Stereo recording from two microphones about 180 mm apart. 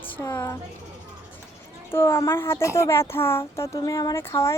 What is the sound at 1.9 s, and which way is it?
Speech, 15° left (ahead or behind).